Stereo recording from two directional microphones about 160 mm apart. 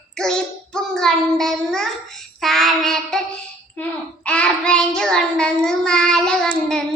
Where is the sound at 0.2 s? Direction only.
5° left (ahead or behind).